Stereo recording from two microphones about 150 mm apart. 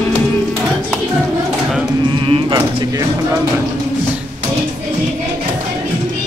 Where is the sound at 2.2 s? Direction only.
35° right (ahead or behind).